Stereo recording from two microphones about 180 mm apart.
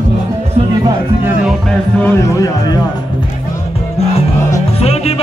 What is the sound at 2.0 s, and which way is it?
Speech, 15° left (ahead or behind).